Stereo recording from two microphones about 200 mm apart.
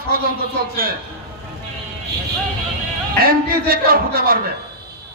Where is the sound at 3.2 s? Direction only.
45° right (ahead or behind).